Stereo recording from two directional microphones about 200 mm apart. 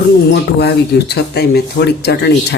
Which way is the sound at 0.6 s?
55° left (ahead or behind).